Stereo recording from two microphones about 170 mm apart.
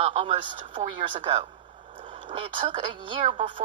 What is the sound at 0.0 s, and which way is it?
A woman's voice, 35° right (ahead or behind).